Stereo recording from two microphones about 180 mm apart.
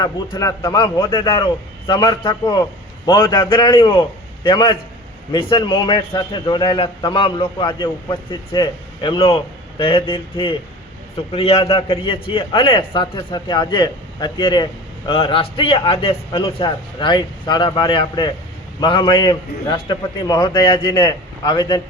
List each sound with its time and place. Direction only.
0.0 s a man's voice: 20° left (ahead or behind)